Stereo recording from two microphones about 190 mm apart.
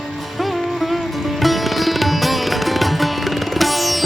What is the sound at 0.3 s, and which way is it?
Sitar, centre (ahead or behind).